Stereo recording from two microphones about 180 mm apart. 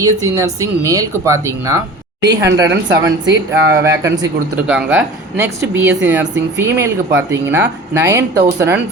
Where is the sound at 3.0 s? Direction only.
15° right (ahead or behind).